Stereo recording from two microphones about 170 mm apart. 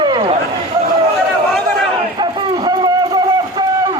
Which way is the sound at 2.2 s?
25° right (ahead or behind).